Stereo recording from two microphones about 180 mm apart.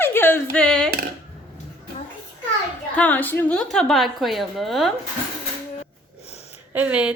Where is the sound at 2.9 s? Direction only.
10° left (ahead or behind).